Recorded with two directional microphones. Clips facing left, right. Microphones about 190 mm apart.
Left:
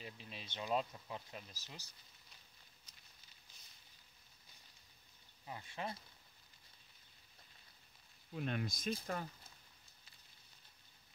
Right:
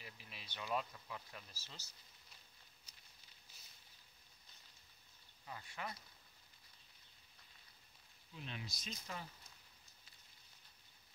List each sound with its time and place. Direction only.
0.0 s speech: 25° left (ahead or behind)
5.5 s speech: 20° left (ahead or behind)
8.3 s speech: 55° left (ahead or behind)